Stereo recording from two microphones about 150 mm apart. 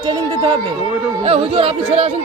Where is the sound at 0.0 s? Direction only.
30° right (ahead or behind).